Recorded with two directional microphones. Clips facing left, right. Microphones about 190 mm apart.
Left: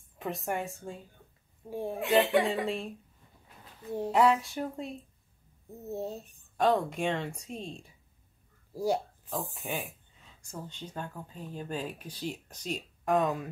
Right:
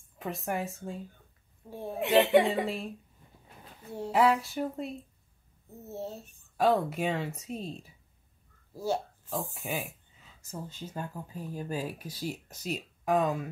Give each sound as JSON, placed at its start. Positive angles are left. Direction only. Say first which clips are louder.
{"t": 0.2, "sound": "speech", "louder": "even", "side_deg": 0}
{"t": 1.7, "sound": "a child's voice", "louder": "left 4 dB", "side_deg": 15}
{"t": 2.0, "sound": "speech", "louder": "right 3 dB", "side_deg": -20}
{"t": 2.6, "sound": "speech", "louder": "left 1 dB", "side_deg": 0}
{"t": 4.1, "sound": "speech", "louder": "even", "side_deg": 0}
{"t": 5.9, "sound": "a child's voice", "louder": "left 3 dB", "side_deg": 15}
{"t": 6.5, "sound": "speech", "louder": "right 1 dB", "side_deg": -5}
{"t": 8.7, "sound": "a sound", "louder": "left 2 dB", "side_deg": 15}
{"t": 9.3, "sound": "speech", "louder": "right 1 dB", "side_deg": 0}